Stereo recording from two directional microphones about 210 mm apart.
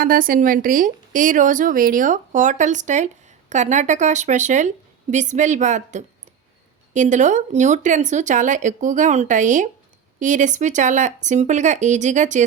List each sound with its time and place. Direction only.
0.0 s a woman's voice: 40° right (ahead or behind)